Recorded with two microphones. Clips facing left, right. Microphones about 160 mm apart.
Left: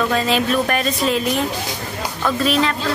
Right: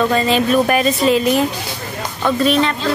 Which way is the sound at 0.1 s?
5° right (ahead or behind).